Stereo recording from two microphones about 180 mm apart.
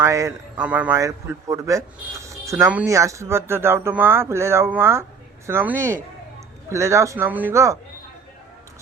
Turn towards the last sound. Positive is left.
turn(degrees=-15)  # may be behind; listen again after turning